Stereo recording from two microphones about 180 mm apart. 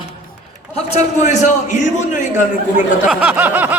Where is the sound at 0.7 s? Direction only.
35° left (ahead or behind).